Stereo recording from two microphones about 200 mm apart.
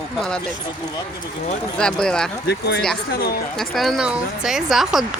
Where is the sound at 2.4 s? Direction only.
55° left (ahead or behind).